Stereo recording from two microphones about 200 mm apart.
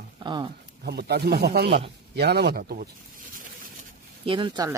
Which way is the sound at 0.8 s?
55° right (ahead or behind).